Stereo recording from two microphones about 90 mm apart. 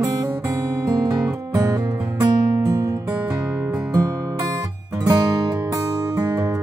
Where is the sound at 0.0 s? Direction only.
40° right (ahead or behind).